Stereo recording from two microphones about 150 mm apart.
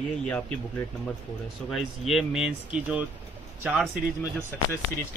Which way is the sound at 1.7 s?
Centre (ahead or behind).